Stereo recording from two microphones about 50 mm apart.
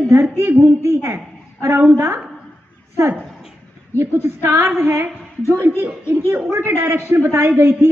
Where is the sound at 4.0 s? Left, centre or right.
Right.